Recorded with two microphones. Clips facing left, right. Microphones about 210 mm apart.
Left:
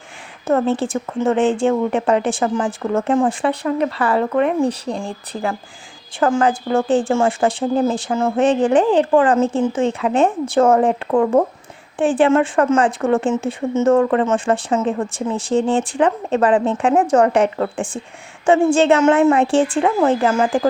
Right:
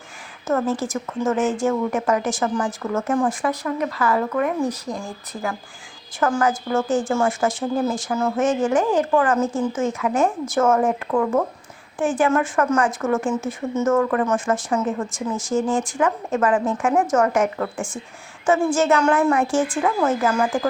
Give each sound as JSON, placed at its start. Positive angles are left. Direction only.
{"t": 0.7, "sound": "speech", "side_deg": 30}